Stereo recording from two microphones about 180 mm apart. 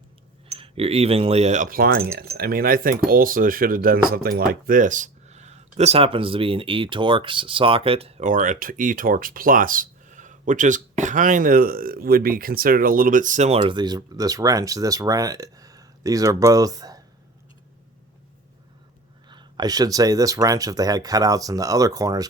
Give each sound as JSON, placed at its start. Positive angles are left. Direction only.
{"t": 0.4, "sound": "speech", "side_deg": -35}
{"t": 13.6, "sound": "speech", "side_deg": -25}
{"t": 19.3, "sound": "speech", "side_deg": -25}